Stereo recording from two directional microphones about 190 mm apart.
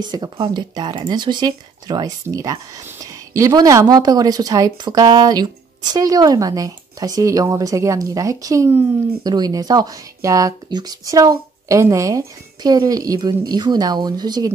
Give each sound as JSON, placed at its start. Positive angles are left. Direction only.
{"t": 0.0, "sound": "speech", "side_deg": -25}